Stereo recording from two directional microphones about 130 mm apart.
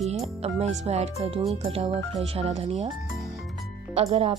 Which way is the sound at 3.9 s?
55° right (ahead or behind).